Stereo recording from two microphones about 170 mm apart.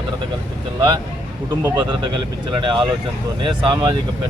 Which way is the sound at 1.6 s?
20° right (ahead or behind).